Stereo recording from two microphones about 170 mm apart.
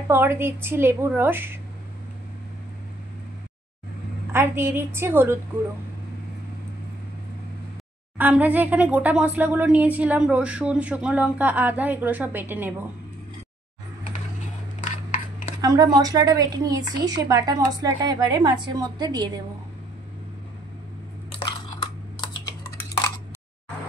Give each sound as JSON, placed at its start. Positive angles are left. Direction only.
{"t": 0.1, "sound": "speech", "side_deg": -15}
{"t": 4.3, "sound": "speech", "side_deg": -15}
{"t": 8.2, "sound": "speech", "side_deg": -10}
{"t": 15.6, "sound": "a woman's voice", "side_deg": -20}
{"t": 22.2, "sound": "typing", "side_deg": 25}
{"t": 22.8, "sound": "a sound", "side_deg": 15}